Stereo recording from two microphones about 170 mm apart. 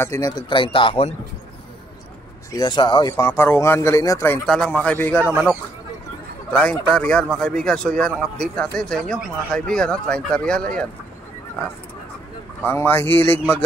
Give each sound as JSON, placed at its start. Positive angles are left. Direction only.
{"t": 0.0, "sound": "speech", "side_deg": 20}
{"t": 2.5, "sound": "speech", "side_deg": 25}
{"t": 4.5, "sound": "speech", "side_deg": 5}
{"t": 6.6, "sound": "speech", "side_deg": 5}
{"t": 12.6, "sound": "speech", "side_deg": 10}